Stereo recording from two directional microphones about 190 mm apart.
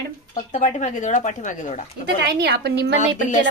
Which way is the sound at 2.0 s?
60° right (ahead or behind).